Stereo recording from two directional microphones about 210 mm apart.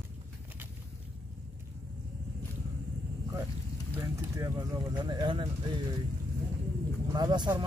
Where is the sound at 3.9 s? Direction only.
20° right (ahead or behind).